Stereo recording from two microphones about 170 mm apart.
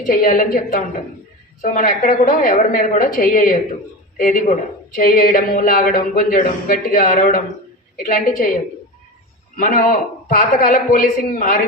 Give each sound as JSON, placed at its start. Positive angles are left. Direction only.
{"t": 0.0, "sound": "speech", "side_deg": 55}
{"t": 9.6, "sound": "a man's voice", "side_deg": 55}